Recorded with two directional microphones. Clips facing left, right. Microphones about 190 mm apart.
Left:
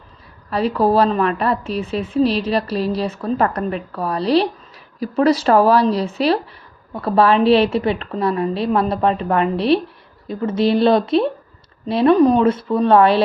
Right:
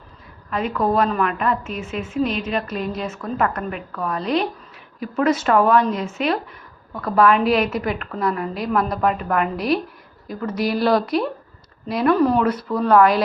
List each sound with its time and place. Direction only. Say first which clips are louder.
0.5 s a woman's voice: left 4 dB; 35° left (ahead or behind)